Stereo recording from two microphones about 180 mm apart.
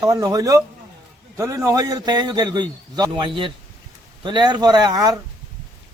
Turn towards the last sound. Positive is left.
turn(degrees=-20)  # may be behind; listen again after turning